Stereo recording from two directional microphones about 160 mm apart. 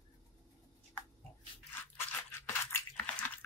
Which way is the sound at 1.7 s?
15° left (ahead or behind).